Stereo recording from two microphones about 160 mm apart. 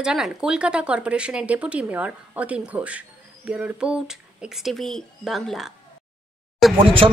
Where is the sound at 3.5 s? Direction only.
10° right (ahead or behind).